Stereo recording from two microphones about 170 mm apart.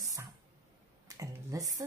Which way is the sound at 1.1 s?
20° right (ahead or behind).